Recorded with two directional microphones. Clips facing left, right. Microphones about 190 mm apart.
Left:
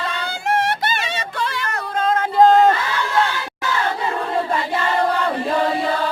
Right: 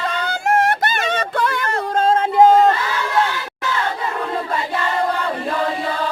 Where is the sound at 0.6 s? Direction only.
50° right (ahead or behind).